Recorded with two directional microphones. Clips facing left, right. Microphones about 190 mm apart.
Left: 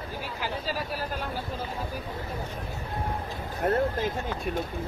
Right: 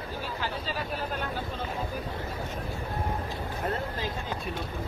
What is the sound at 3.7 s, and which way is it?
Speech, 50° left (ahead or behind).